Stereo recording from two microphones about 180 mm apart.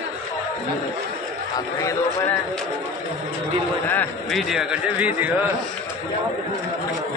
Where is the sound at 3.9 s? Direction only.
10° left (ahead or behind).